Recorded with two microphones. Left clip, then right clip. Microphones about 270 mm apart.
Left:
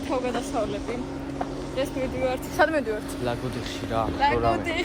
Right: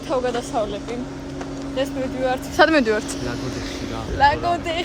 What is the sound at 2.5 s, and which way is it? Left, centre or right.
Speech, right.